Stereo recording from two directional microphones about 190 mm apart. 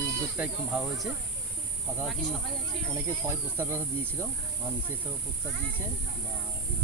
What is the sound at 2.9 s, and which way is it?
Speech, 15° right (ahead or behind).